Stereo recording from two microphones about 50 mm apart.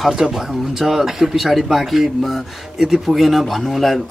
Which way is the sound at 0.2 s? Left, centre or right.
Centre.